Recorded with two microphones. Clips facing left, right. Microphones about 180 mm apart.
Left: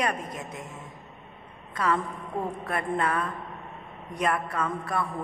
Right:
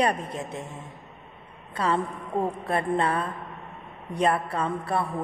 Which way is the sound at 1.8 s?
30° right (ahead or behind).